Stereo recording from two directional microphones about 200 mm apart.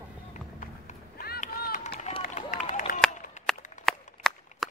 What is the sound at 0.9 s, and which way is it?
Run, 45° left (ahead or behind).